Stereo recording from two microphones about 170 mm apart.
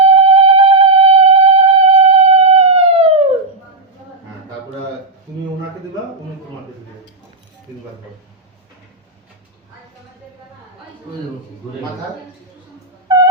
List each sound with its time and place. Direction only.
0.0 s music: 35° right (ahead or behind)